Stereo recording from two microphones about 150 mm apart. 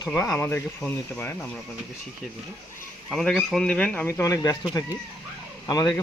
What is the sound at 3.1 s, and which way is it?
Speech, centre (ahead or behind).